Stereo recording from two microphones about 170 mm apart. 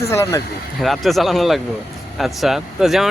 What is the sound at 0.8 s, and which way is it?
Speech, centre (ahead or behind).